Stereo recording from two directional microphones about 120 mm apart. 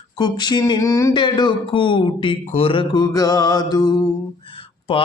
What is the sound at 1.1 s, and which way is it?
Speech, 40° left (ahead or behind).